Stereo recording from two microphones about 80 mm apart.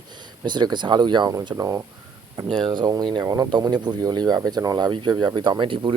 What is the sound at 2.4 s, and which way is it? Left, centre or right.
Speech, centre.